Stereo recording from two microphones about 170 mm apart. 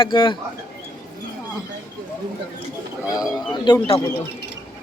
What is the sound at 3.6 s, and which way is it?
Speech, 25° left (ahead or behind).